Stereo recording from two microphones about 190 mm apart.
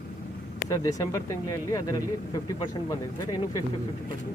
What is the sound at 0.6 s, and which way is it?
Speech, 15° left (ahead or behind).